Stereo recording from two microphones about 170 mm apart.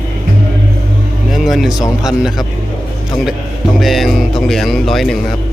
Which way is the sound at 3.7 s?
Centre (ahead or behind).